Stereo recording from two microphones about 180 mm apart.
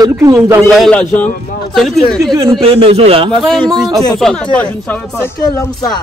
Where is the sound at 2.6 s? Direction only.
30° right (ahead or behind).